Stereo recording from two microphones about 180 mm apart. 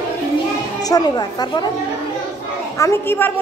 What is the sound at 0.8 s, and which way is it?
Speech, 20° left (ahead or behind).